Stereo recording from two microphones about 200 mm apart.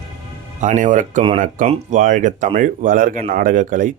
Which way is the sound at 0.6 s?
35° right (ahead or behind).